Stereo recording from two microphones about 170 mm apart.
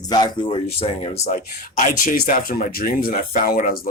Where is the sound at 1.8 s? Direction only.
50° left (ahead or behind).